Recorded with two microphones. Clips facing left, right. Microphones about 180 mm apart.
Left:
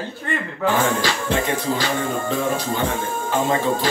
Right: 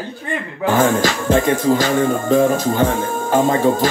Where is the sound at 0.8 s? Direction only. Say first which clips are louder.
Right 5 dB; 45° right (ahead or behind).